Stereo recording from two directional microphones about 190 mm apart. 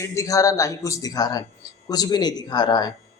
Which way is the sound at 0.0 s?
15° left (ahead or behind).